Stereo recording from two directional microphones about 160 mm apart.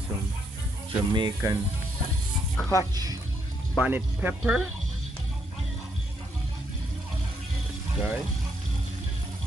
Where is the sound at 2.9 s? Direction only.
20° right (ahead or behind).